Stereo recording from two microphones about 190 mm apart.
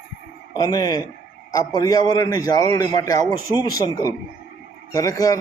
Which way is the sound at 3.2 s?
15° right (ahead or behind).